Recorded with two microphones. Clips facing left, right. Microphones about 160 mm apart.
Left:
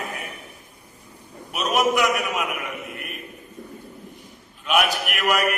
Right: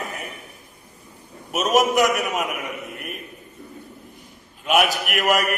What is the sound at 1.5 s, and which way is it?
Speech, 45° right (ahead or behind).